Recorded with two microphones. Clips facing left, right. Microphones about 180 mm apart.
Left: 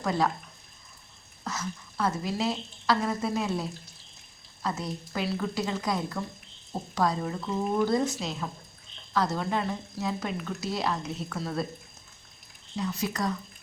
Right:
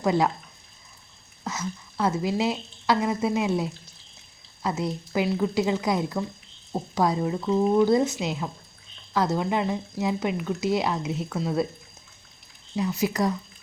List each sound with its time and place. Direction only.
0.0 s speech: 20° right (ahead or behind)
1.5 s speech: 20° right (ahead or behind)
12.7 s speech: 20° right (ahead or behind)